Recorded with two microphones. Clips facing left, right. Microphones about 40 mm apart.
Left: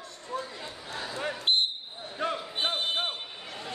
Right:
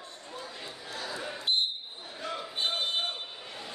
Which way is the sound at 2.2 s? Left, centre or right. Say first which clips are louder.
Left 7 dB; left.